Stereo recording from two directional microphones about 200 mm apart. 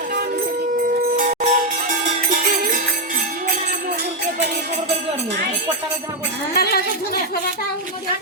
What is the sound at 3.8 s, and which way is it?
Music, 55° right (ahead or behind).